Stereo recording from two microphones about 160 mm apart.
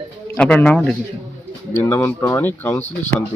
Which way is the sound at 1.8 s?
15° left (ahead or behind).